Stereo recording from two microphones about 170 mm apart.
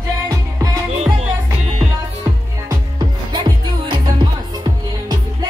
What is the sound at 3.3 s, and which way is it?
Music, 25° right (ahead or behind).